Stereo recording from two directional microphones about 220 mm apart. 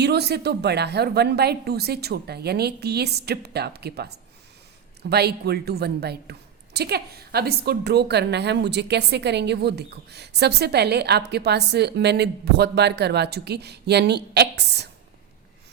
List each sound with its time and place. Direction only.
0.0 s a woman's voice: 50° right (ahead or behind)